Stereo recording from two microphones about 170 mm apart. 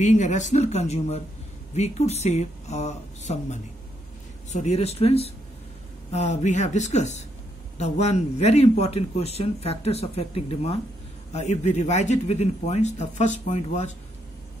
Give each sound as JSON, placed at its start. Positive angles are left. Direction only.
{"t": 0.0, "sound": "a man's voice", "side_deg": 45}